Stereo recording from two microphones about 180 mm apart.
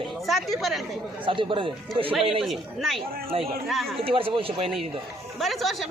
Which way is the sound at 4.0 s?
30° right (ahead or behind).